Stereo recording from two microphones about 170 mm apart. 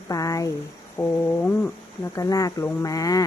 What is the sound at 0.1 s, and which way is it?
Speech, 20° left (ahead or behind).